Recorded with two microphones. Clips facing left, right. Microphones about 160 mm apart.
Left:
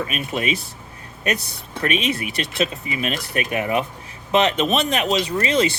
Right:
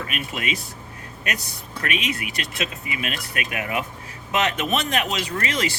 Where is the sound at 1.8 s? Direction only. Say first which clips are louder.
Left 5 dB; 30° left (ahead or behind).